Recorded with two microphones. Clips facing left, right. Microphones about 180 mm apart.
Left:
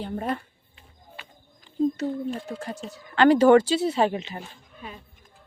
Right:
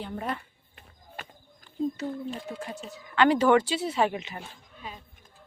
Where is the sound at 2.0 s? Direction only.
45° left (ahead or behind).